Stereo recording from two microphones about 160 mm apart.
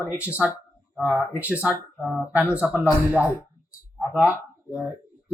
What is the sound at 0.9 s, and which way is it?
Speech, 15° left (ahead or behind).